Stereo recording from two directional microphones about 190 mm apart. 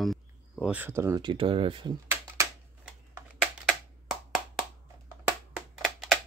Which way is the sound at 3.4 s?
Centre (ahead or behind).